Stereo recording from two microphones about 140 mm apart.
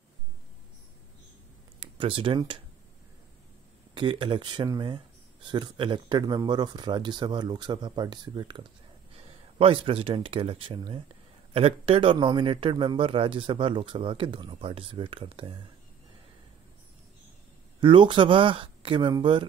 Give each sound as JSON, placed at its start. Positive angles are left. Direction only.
{"t": 2.0, "sound": "speech", "side_deg": -40}
{"t": 3.9, "sound": "speech", "side_deg": -35}
{"t": 17.7, "sound": "speech", "side_deg": -35}